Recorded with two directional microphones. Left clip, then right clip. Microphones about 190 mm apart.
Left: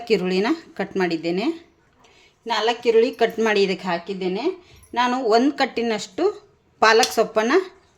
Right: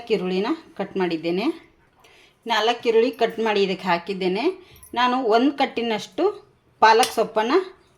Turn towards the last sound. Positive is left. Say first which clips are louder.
# left 2 dB
turn(degrees=10)  # may be behind; listen again after turning